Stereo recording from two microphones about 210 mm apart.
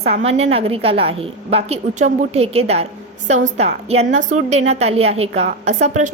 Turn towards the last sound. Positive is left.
turn(degrees=-35)  # may be behind; listen again after turning